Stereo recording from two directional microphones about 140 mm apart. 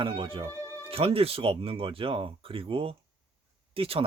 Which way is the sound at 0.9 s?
45° right (ahead or behind).